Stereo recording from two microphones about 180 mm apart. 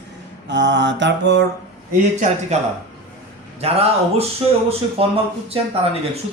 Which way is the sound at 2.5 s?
40° right (ahead or behind).